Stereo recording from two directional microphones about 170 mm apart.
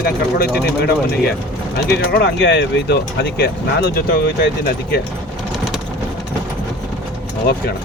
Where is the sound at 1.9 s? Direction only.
75° left (ahead or behind).